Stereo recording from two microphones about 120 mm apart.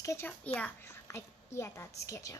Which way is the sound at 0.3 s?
15° left (ahead or behind).